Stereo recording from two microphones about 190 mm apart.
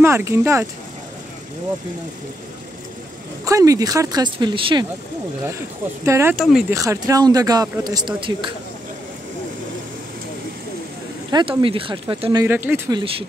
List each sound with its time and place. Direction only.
0.0 s speech: 15° right (ahead or behind)
3.4 s speech: 15° right (ahead or behind)
6.0 s speech: 15° right (ahead or behind)
6.3 s speech: centre (ahead or behind)
6.7 s speech: 15° right (ahead or behind)
11.2 s speech: 25° right (ahead or behind)